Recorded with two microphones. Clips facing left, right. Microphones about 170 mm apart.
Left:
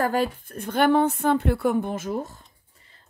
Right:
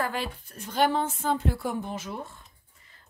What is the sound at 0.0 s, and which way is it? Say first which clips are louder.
A woman's voice: left 7 dB; 45° left (ahead or behind).